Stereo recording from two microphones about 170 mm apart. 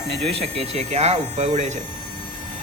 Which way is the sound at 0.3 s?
35° right (ahead or behind).